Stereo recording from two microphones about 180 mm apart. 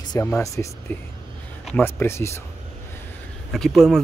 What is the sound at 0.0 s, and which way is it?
Speech, 20° left (ahead or behind).